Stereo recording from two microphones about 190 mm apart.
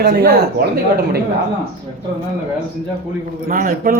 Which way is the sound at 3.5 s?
50° right (ahead or behind).